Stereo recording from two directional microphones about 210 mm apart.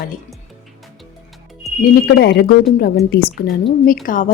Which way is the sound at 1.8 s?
50° left (ahead or behind).